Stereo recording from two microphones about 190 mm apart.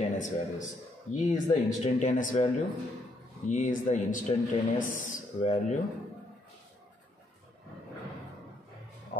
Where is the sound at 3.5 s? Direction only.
40° left (ahead or behind).